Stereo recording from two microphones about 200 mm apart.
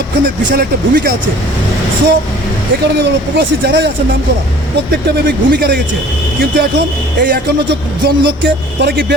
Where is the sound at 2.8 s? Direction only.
55° right (ahead or behind).